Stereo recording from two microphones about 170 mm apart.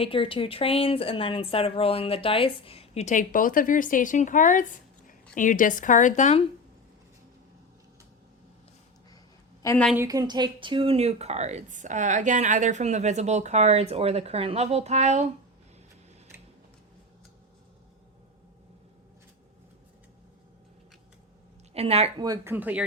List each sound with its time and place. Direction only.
0.0 s a woman's voice: 30° left (ahead or behind)
9.6 s a woman's voice: 10° left (ahead or behind)
9.9 s speech: 15° right (ahead or behind); by 15.3 s 40° right (ahead or behind)
21.7 s speech: 35° right (ahead or behind)
22.2 s speech: 20° right (ahead or behind)
22.5 s speech: 10° right (ahead or behind)